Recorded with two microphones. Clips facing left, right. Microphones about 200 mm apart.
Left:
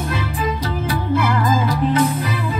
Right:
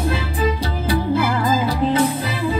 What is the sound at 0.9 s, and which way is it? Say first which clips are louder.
Music: right 2 dB; 30° right (ahead or behind).